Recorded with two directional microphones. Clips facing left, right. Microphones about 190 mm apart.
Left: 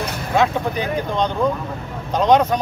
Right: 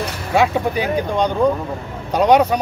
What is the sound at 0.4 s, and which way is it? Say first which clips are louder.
Speech: right 2 dB; 10° right (ahead or behind).